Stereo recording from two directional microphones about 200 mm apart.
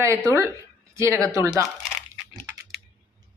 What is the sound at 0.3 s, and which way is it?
A woman's voice, 15° right (ahead or behind).